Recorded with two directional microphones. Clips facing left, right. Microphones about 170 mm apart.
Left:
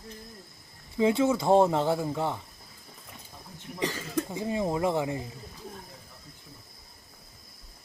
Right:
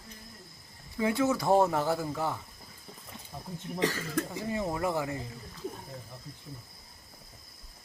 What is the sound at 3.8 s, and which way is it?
Speech, 15° left (ahead or behind).